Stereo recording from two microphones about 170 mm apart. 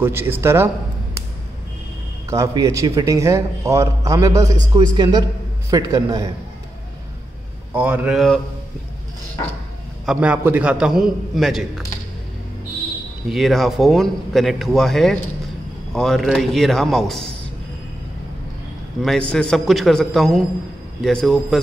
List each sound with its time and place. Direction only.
0.0 s speech: 15° right (ahead or behind)
2.2 s a man's voice: 20° right (ahead or behind)
7.7 s speech: 10° right (ahead or behind)
10.0 s a man's voice: 5° right (ahead or behind)
13.3 s a man's voice: centre (ahead or behind)
18.9 s a man's voice: 5° left (ahead or behind)